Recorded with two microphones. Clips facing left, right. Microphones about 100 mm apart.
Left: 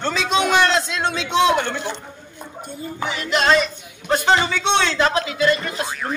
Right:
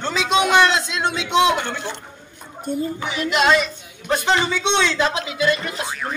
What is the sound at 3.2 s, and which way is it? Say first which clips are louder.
A man's voice: even; 10° right (ahead or behind).